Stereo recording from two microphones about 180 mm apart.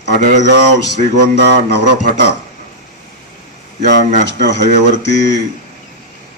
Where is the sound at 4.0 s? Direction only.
45° right (ahead or behind).